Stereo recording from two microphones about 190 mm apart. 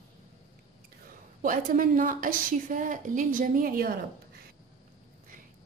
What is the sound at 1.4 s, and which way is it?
A woman's voice, 45° right (ahead or behind).